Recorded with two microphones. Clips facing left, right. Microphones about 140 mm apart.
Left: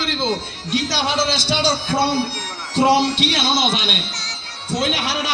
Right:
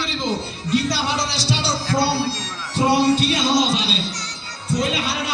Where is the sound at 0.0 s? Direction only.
90° left.